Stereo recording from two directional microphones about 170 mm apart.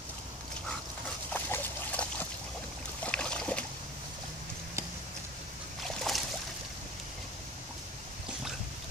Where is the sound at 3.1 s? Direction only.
5° left (ahead or behind).